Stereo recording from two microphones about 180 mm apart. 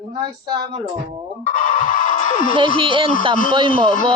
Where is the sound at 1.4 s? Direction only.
50° left (ahead or behind).